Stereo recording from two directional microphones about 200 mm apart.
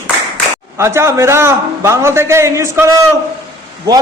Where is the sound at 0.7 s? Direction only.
15° right (ahead or behind).